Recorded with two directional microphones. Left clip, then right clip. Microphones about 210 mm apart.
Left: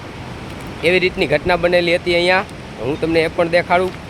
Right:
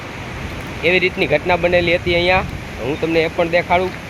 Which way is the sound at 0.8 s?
15° left (ahead or behind).